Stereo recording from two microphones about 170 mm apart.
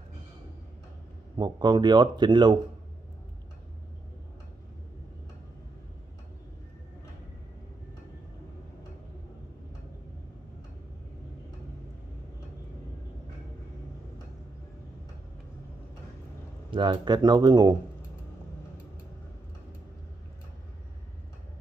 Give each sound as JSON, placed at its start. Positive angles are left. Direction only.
{"t": 1.3, "sound": "speech", "side_deg": -25}
{"t": 16.7, "sound": "speech", "side_deg": -25}